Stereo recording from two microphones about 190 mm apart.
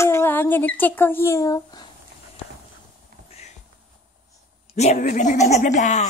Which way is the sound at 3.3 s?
35° left (ahead or behind).